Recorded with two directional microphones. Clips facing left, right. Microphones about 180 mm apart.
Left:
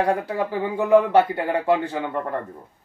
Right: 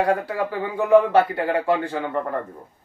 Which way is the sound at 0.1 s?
20° left (ahead or behind).